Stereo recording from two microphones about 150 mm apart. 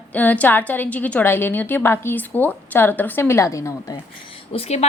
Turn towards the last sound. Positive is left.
turn(degrees=45)  # may be behind; listen again after turning